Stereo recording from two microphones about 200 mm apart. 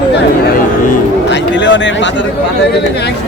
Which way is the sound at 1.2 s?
60° left (ahead or behind).